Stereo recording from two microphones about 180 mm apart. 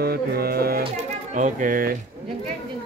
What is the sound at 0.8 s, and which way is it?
Speech, 40° right (ahead or behind).